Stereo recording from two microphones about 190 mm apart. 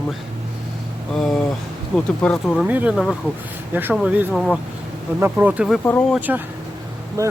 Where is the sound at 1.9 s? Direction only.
5° left (ahead or behind).